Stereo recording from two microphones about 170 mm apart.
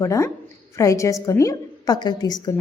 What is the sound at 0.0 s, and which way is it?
A woman's voice, 15° left (ahead or behind).